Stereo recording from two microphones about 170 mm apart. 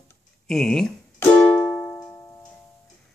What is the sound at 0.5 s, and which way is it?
Music, 5° left (ahead or behind).